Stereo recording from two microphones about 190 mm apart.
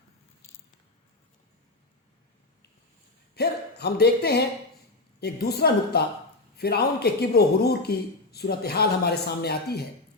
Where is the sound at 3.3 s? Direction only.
60° left (ahead or behind).